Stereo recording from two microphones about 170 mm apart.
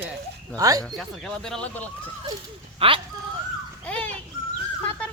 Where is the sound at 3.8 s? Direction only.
10° left (ahead or behind).